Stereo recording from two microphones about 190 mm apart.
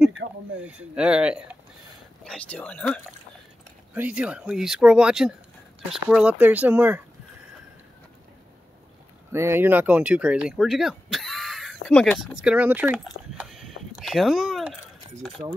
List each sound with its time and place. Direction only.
0.2 s a sound: 55° right (ahead or behind)
0.6 s speech: 5° right (ahead or behind)
2.2 s speech: 5° left (ahead or behind)
3.9 s speech: 5° right (ahead or behind)
9.3 s speech: 15° right (ahead or behind); by 12.4 s 5° left (ahead or behind)
12.4 s speech: 5° right (ahead or behind)
13.4 s a sound: centre (ahead or behind)